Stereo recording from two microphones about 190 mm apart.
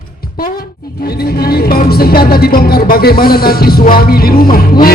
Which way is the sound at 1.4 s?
55° left (ahead or behind).